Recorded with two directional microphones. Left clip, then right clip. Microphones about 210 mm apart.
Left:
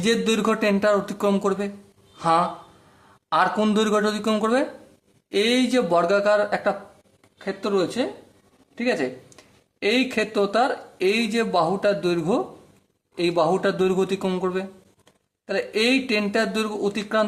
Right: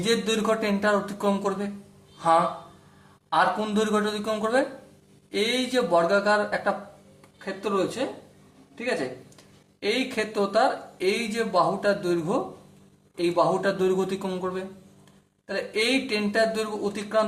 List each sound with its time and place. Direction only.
0.0 s speech: 45° left (ahead or behind)
2.1 s a sound: 45° left (ahead or behind)
3.2 s speech: 45° left (ahead or behind)
9.8 s speech: 45° left (ahead or behind)